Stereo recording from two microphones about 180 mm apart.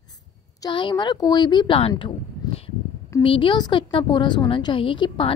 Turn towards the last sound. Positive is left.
turn(degrees=30)  # may be behind; listen again after turning